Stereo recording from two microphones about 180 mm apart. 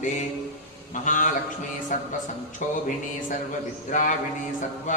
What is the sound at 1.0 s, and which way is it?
Mantra, 45° left (ahead or behind).